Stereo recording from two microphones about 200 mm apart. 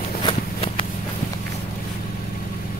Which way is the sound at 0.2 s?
25° left (ahead or behind).